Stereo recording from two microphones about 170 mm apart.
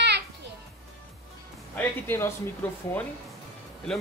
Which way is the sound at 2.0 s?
10° left (ahead or behind).